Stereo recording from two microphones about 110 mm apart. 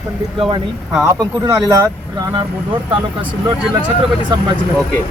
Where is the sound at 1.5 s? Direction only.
30° right (ahead or behind).